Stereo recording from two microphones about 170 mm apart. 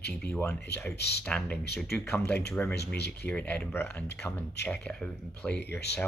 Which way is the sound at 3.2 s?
10° left (ahead or behind).